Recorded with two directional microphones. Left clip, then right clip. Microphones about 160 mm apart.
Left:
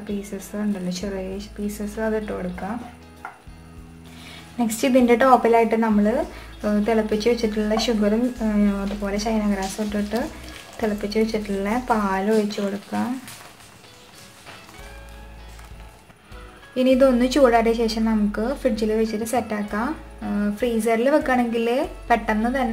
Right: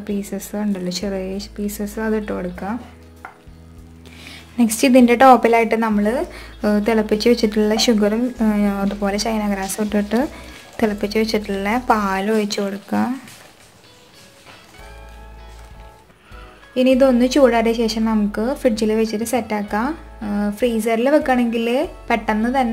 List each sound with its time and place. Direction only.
0.3 s speech: 55° right (ahead or behind)
4.3 s speech: 45° right (ahead or behind); by 13.1 s 60° right (ahead or behind)
16.7 s a woman's voice: 25° right (ahead or behind)